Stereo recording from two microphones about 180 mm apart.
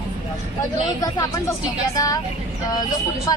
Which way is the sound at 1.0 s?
20° left (ahead or behind).